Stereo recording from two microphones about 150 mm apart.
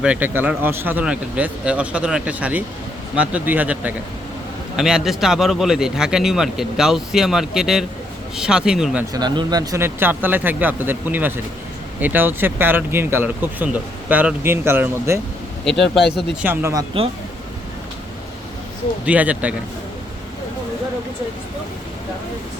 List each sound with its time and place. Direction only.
0.0 s speech: 10° right (ahead or behind)
9.1 s speech: 30° right (ahead or behind)
15.6 s speech: centre (ahead or behind)
16.4 s speech: 15° right (ahead or behind)
19.0 s speech: 10° right (ahead or behind)